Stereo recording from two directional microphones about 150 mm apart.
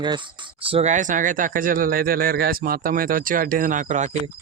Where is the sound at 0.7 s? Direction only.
50° right (ahead or behind).